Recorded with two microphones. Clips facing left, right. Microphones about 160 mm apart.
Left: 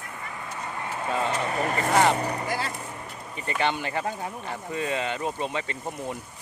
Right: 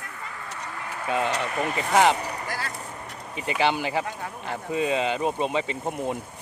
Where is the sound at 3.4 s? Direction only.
5° right (ahead or behind).